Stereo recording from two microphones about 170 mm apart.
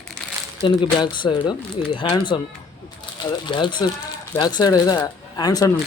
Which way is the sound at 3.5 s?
25° left (ahead or behind).